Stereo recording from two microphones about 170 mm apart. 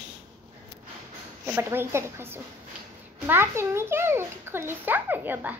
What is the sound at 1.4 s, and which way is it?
A child's voice, 15° right (ahead or behind).